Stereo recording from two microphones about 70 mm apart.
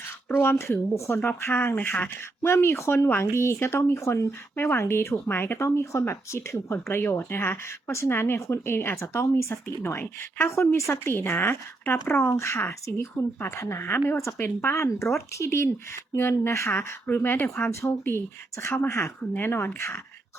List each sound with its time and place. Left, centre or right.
0.3 s speech: left
5.5 s speech: left
14.8 s speech: left
17.7 s speech: left
19.2 s speech: left